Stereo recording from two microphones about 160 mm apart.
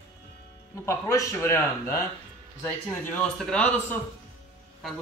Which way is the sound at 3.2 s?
5° left (ahead or behind).